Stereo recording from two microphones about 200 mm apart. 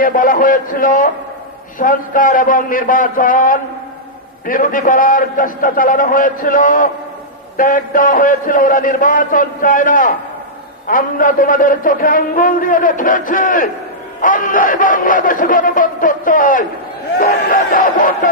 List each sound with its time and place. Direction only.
0.0 s a man's voice: 45° left (ahead or behind)